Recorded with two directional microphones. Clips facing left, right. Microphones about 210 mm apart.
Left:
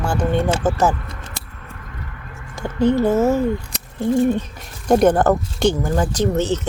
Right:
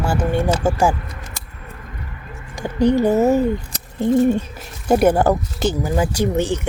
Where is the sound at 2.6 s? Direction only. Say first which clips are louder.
Right 1 dB; 15° right (ahead or behind).